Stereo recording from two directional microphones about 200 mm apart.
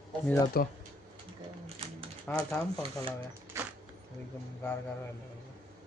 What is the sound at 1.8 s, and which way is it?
Typewriter, 30° right (ahead or behind).